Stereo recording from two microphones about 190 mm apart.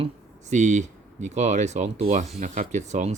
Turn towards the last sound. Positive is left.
turn(degrees=-40)  # may be behind; listen again after turning